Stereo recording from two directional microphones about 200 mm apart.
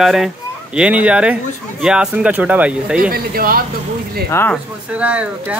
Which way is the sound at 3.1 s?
45° right (ahead or behind).